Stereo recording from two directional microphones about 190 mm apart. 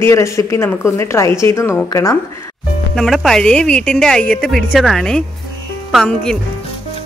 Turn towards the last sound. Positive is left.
turn(degrees=0)  # may be behind; listen again after turning